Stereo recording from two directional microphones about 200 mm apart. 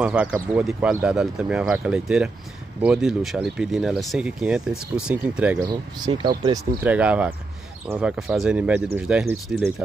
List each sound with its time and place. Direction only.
0.0 s speech: 5° right (ahead or behind)
6.0 s speech: 20° right (ahead or behind)
6.8 s speech: 5° right (ahead or behind)